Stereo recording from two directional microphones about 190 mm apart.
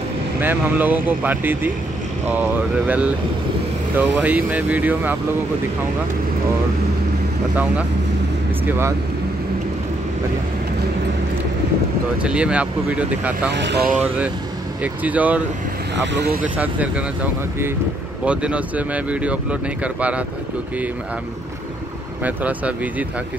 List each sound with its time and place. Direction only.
0.4 s speech: 10° right (ahead or behind)
8.6 s speech: 10° right (ahead or behind)
12.2 s speech: 5° right (ahead or behind)
13.5 s speech: 65° right (ahead or behind)
13.9 s speech: 5° right (ahead or behind)
16.1 s speech: 55° right (ahead or behind)
16.5 s speech: 10° right (ahead or behind)
22.2 s speech: 10° right (ahead or behind)